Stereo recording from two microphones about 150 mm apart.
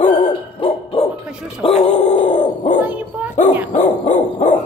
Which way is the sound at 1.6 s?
40° left (ahead or behind).